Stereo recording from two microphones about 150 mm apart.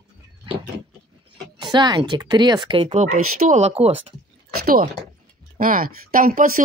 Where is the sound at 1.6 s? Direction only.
30° right (ahead or behind).